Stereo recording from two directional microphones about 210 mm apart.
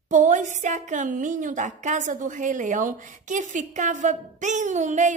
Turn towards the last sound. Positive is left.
turn(degrees=-35)  # may be behind; listen again after turning